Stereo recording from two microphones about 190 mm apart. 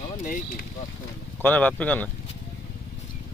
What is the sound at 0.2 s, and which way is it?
Speech, 45° left (ahead or behind).